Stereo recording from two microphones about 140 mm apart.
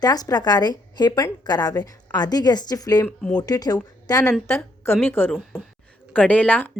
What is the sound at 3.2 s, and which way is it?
Speech, 5° left (ahead or behind).